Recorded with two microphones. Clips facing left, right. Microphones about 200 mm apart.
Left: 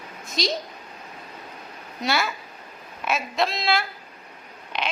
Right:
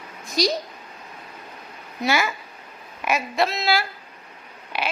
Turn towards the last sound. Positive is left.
turn(degrees=-10)  # may be behind; listen again after turning